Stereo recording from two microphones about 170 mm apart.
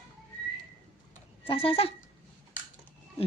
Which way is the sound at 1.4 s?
30° left (ahead or behind).